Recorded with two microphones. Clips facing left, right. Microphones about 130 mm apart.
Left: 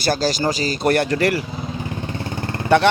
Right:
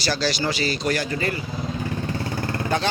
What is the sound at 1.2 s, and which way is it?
Speech, 80° left.